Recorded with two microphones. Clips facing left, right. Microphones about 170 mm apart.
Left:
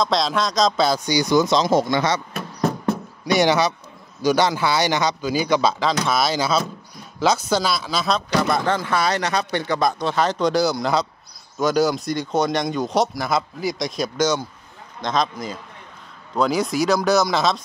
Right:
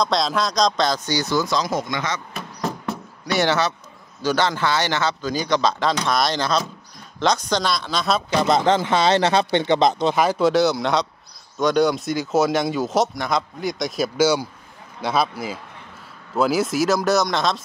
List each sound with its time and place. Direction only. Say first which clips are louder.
0.0 s a man's voice: even; centre (ahead or behind); by 2.2 s 30° left (ahead or behind)
3.3 s a man's voice: left 3 dB; 15° left (ahead or behind)
8.3 s a man's voice: right 5 dB; 20° right (ahead or behind); by 17.6 s centre (ahead or behind)